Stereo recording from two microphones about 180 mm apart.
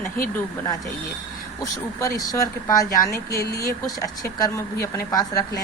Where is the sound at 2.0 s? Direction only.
20° left (ahead or behind).